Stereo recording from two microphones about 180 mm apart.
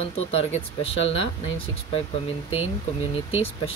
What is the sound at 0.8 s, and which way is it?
Speech, 35° left (ahead or behind).